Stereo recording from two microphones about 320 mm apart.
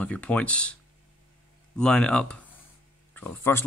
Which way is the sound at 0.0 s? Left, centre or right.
Centre.